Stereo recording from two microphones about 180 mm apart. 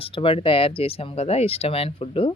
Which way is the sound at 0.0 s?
30° left (ahead or behind).